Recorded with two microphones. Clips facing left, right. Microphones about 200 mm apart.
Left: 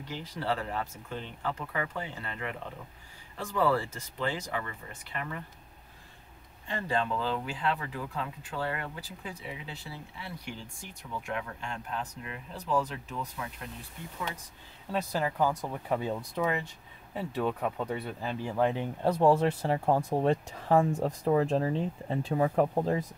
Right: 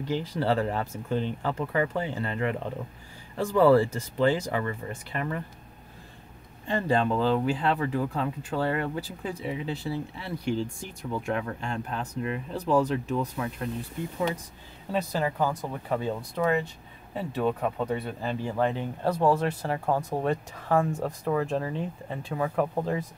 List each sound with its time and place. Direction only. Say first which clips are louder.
0.1 s speech: right 7 dB; 30° right (ahead or behind)
6.7 s speech: right 6 dB; 35° right (ahead or behind)
14.9 s speech: right 3 dB; centre (ahead or behind)
19.2 s speech: left 1 dB; 25° left (ahead or behind)
19.9 s speech: even; 10° left (ahead or behind)
20.2 s speech: left 1 dB; 25° left (ahead or behind)